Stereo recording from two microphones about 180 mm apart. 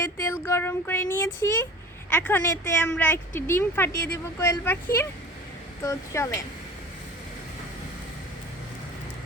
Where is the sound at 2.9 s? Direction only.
10° left (ahead or behind).